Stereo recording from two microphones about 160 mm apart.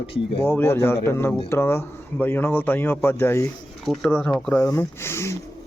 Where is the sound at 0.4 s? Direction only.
15° left (ahead or behind).